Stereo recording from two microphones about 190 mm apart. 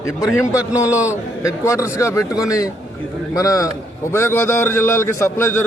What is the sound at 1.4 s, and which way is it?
A man's voice, 15° left (ahead or behind).